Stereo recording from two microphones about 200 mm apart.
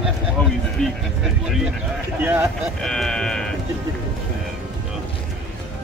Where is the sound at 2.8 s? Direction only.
Centre (ahead or behind).